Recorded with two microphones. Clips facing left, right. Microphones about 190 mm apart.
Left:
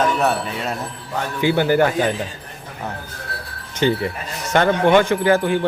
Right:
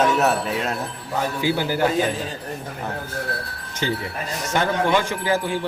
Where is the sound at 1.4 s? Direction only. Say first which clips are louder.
Left 8 dB; 60° left (ahead or behind).